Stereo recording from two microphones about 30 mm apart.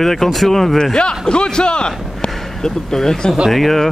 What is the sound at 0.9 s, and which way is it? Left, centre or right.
A man's voice, left.